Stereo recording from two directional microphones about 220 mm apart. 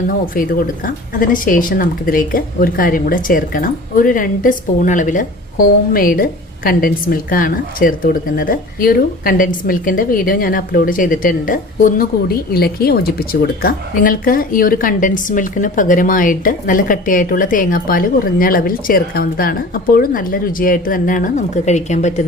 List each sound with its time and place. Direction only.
0.1 s a woman's voice: 40° left (ahead or behind)